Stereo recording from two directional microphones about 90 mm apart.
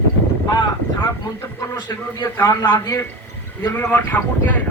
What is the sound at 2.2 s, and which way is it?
Speech, 25° left (ahead or behind).